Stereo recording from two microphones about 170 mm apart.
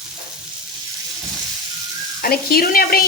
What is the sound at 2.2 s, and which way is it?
Speech, 60° left (ahead or behind).